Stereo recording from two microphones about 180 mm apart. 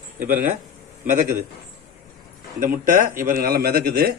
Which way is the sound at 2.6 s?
45° right (ahead or behind).